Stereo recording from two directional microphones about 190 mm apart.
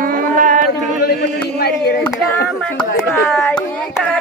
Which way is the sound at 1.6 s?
55° left (ahead or behind).